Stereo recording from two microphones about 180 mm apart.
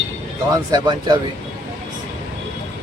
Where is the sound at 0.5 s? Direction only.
25° right (ahead or behind).